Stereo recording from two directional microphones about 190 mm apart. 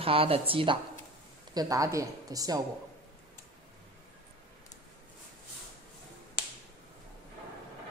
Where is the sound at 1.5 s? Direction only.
15° right (ahead or behind).